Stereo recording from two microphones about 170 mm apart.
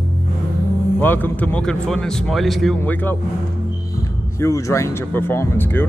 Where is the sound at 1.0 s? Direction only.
10° left (ahead or behind).